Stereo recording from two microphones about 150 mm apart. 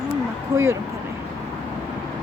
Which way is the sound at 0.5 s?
20° right (ahead or behind).